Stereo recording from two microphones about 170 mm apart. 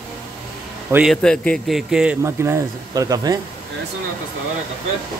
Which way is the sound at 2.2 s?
15° right (ahead or behind).